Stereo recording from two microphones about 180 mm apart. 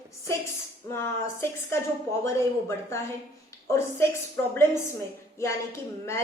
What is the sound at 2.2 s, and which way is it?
A woman's voice, 15° left (ahead or behind).